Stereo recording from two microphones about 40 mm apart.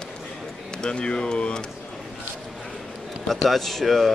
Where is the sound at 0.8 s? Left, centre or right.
Left.